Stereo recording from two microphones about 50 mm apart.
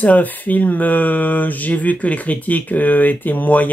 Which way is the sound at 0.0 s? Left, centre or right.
Left.